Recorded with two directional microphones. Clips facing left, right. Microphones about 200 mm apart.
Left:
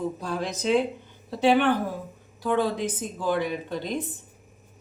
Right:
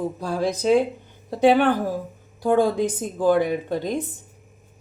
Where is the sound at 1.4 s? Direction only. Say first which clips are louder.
Right 4 dB; 50° right (ahead or behind).